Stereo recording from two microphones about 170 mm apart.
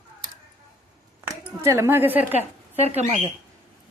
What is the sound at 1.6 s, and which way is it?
Speech, 15° right (ahead or behind).